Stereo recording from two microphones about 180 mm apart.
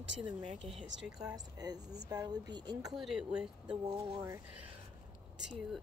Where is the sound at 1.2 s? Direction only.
20° right (ahead or behind).